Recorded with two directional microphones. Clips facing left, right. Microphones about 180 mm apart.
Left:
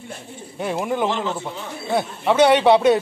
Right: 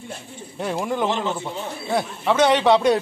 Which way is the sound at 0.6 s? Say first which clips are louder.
Left 1 dB; 5° left (ahead or behind).